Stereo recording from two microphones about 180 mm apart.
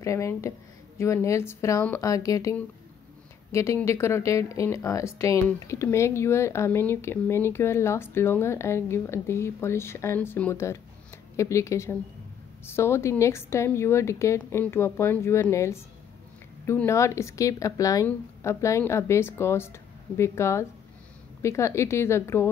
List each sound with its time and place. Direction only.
0.0 s speech: 15° left (ahead or behind)
3.5 s speech: 15° left (ahead or behind)